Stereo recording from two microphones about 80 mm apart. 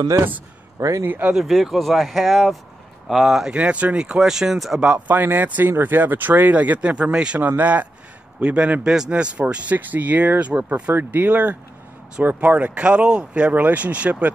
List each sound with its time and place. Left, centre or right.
0.7 s a man's voice: right
1.0 s speech: right
1.3 s speech: centre
3.5 s speech: centre